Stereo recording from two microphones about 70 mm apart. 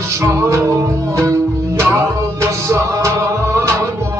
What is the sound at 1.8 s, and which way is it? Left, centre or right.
Music, right.